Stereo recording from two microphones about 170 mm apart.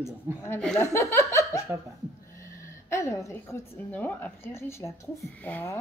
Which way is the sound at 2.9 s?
15° left (ahead or behind).